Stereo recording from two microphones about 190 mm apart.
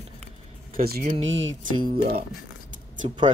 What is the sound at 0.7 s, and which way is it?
Speech, 50° right (ahead or behind).